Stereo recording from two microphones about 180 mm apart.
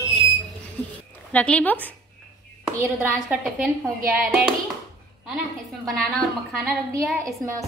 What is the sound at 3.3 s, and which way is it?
Speech, centre (ahead or behind).